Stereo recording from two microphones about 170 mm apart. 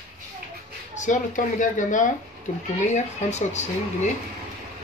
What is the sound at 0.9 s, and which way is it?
Speech, 45° left (ahead or behind).